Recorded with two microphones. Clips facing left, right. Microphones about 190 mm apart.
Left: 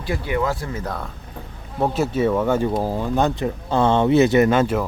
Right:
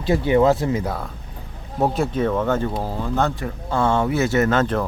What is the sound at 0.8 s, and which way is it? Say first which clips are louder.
Speech: right 2 dB; 5° right (ahead or behind).